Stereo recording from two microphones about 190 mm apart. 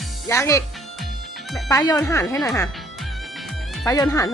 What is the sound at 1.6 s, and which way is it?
Speech, 20° left (ahead or behind).